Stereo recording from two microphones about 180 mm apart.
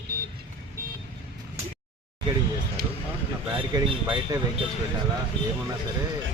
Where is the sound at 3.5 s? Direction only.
30° right (ahead or behind).